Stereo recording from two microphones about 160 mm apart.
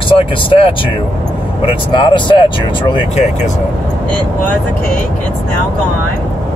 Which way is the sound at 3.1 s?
45° left (ahead or behind).